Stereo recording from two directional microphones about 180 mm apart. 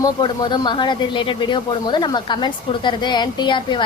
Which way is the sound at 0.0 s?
25° left (ahead or behind).